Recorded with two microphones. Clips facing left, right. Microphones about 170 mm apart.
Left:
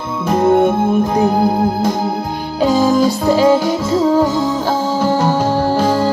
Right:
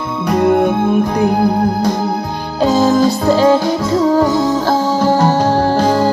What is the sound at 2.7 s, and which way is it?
Music, 45° right (ahead or behind).